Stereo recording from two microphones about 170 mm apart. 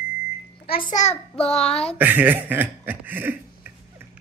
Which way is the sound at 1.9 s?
10° right (ahead or behind).